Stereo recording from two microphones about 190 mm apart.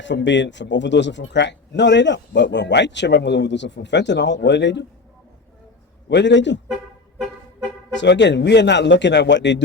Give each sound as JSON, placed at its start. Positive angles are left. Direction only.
{"t": 0.0, "sound": "a man's voice", "side_deg": 70}
{"t": 6.1, "sound": "a man's voice", "side_deg": 65}
{"t": 7.9, "sound": "a man's voice", "side_deg": 70}